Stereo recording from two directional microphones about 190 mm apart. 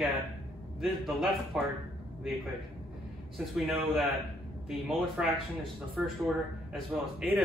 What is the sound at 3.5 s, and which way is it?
A man's voice, centre (ahead or behind).